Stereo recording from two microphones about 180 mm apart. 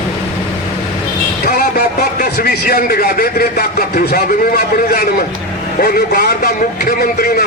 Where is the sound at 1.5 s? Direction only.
55° left (ahead or behind).